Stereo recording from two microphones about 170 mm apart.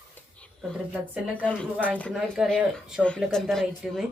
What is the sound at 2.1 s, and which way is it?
A woman's voice, centre (ahead or behind).